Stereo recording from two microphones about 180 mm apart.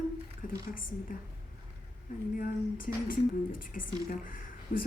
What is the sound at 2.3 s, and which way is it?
Speech, 50° left (ahead or behind).